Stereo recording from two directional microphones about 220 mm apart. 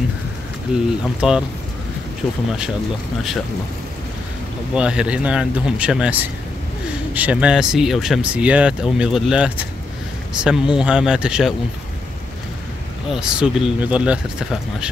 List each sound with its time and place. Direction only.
0.7 s speech: 5° right (ahead or behind)
2.2 s speech: 20° left (ahead or behind)
4.7 s speech: 5° right (ahead or behind)
13.1 s speech: 5° right (ahead or behind)